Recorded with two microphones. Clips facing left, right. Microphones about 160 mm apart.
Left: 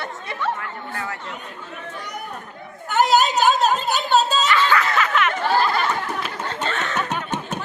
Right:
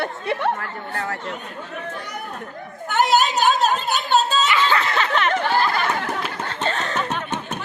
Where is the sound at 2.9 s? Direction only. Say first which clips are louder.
Left 1 dB; 55° right (ahead or behind).